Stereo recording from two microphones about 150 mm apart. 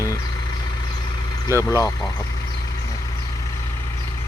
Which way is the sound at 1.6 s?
20° left (ahead or behind).